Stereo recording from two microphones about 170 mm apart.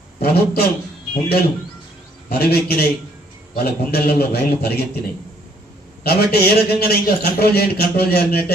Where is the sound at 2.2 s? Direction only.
65° left (ahead or behind).